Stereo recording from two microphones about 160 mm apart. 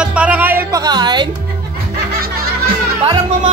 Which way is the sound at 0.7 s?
25° right (ahead or behind).